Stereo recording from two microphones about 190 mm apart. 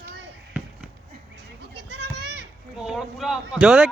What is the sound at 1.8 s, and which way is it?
Children playing, 60° right (ahead or behind).